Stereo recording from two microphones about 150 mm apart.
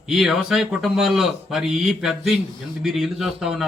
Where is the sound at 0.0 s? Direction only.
Centre (ahead or behind).